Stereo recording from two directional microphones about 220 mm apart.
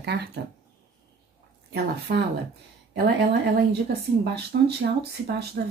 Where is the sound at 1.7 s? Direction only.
50° right (ahead or behind).